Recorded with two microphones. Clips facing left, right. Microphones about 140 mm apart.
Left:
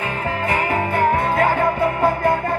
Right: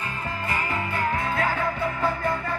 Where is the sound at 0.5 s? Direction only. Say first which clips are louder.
Left 8 dB; 60° left (ahead or behind).